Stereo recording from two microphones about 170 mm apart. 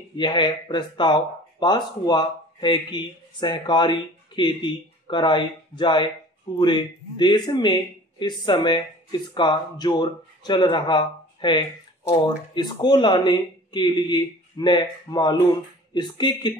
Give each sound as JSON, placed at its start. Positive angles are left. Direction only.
{"t": 0.2, "sound": "speech", "side_deg": 25}